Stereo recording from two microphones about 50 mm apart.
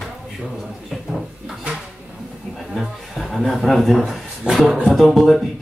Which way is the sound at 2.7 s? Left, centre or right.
Centre.